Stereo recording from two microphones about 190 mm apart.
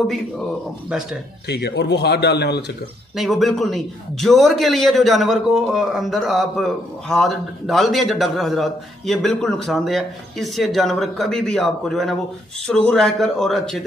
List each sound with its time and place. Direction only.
1.5 s speech: 60° left (ahead or behind)
3.2 s a man's voice: centre (ahead or behind)